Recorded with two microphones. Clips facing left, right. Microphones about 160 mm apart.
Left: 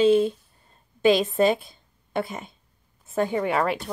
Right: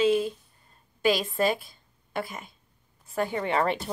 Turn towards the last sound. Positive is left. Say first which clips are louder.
# left 1 dB
turn(degrees=5)  # may be behind; listen again after turning